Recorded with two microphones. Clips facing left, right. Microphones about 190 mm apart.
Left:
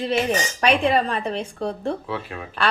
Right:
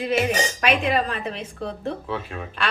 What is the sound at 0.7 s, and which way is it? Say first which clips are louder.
A woman's voice: left 4 dB; 35° left (ahead or behind).